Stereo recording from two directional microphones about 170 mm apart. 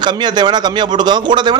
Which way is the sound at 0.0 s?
25° right (ahead or behind).